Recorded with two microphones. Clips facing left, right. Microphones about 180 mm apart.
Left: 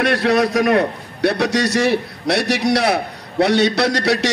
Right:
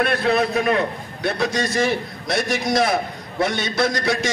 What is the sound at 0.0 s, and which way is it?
A man's voice, 75° left (ahead or behind).